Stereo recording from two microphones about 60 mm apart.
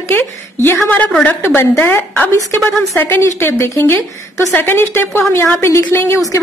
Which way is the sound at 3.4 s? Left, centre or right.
Left.